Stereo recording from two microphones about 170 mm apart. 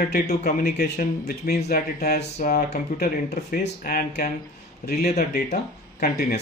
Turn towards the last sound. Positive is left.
turn(degrees=60)  # may be behind; listen again after turning